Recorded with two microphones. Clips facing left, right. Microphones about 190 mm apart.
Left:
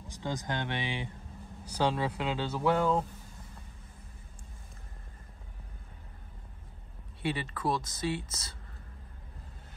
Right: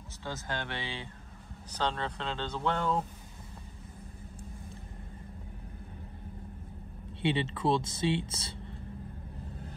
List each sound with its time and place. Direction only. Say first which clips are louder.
0.2 s speech: left 3 dB; 15° left (ahead or behind)
7.2 s speech: right 4 dB; 25° right (ahead or behind)